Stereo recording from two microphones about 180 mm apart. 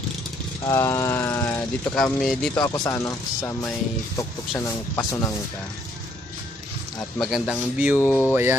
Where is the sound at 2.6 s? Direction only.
20° left (ahead or behind).